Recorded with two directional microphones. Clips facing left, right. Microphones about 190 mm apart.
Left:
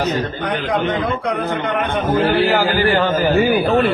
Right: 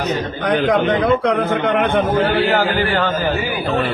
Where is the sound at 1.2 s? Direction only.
70° right (ahead or behind).